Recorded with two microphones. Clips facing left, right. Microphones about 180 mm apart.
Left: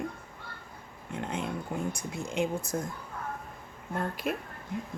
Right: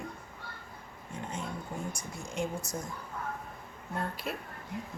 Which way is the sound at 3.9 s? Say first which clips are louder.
Left 4 dB; 50° left (ahead or behind).